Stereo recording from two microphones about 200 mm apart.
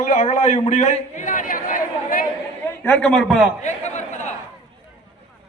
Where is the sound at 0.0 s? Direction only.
40° left (ahead or behind).